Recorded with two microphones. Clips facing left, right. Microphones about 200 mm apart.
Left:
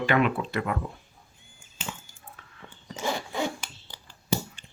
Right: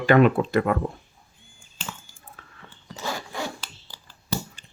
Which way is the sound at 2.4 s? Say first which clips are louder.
Right 3 dB; 40° right (ahead or behind).